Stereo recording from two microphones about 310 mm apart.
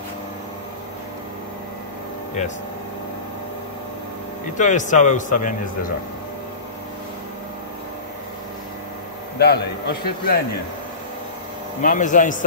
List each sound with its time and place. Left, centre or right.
4.6 s a man's voice: left
9.4 s a man's voice: left
11.8 s a man's voice: left